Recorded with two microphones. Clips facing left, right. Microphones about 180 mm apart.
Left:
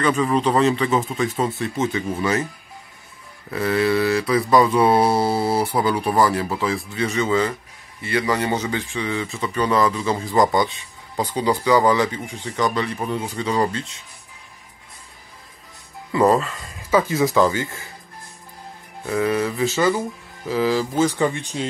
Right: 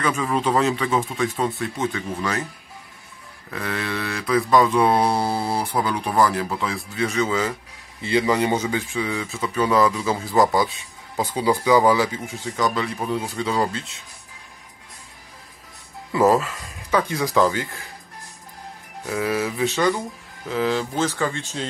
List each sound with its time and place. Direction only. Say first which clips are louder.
0.0 s mantra: left 3 dB; centre (ahead or behind)
1.9 s speech: left 4 dB; 15° left (ahead or behind)
3.4 s mantra: left 8 dB; 5° left (ahead or behind)
8.0 s mantra: right 2 dB; 20° right (ahead or behind); by 13.9 s centre (ahead or behind)
16.1 s speech: left 1 dB; 5° right (ahead or behind)
19.0 s mantra: left 3 dB; 5° right (ahead or behind)
20.4 s speech: left 2 dB; centre (ahead or behind)